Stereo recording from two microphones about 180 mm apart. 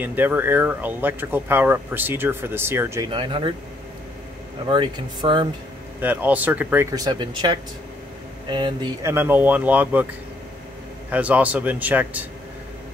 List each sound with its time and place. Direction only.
0.0 s speech: 10° right (ahead or behind)
3.1 s speech: 25° right (ahead or behind)
4.6 s speech: 25° right (ahead or behind)
5.9 s speech: 10° right (ahead or behind)
6.9 s speech: 25° right (ahead or behind)
9.1 s speech: 10° right (ahead or behind)
11.1 s speech: 10° right (ahead or behind)